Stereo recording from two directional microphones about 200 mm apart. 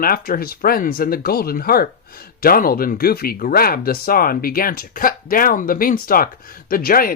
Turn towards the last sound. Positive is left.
turn(degrees=45)  # may be behind; listen again after turning